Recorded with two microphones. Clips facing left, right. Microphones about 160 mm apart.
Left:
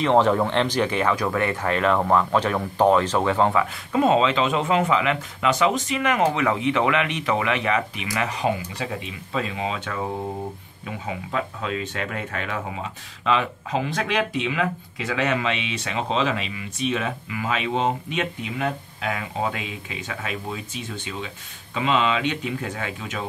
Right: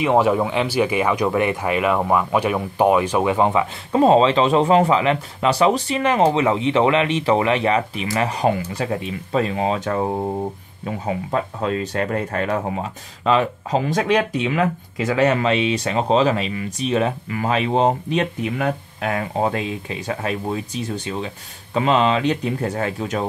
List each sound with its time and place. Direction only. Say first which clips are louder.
0.0 s speech: right 2 dB; 10° right (ahead or behind)
3.9 s speech: right 5 dB; 35° right (ahead or behind)
8.8 s speech: right 6 dB; 45° right (ahead or behind)